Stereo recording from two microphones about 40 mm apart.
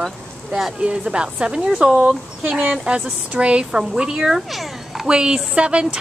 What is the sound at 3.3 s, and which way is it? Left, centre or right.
Speech, right.